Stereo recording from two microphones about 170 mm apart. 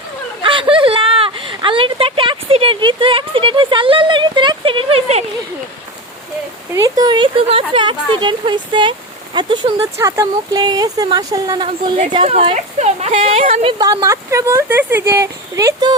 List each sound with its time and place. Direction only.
0.4 s speech: 30° right (ahead or behind)
6.7 s speech: 20° right (ahead or behind); by 13.7 s 35° right (ahead or behind)
13.7 s speech: 20° right (ahead or behind)